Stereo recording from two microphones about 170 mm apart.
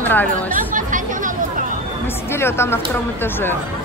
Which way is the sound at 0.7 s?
50° right (ahead or behind).